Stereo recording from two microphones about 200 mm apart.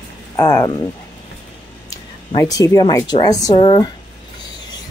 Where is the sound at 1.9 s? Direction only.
20° left (ahead or behind).